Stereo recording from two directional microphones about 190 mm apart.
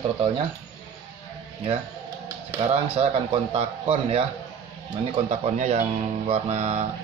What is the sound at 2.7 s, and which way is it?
Speech, 30° right (ahead or behind).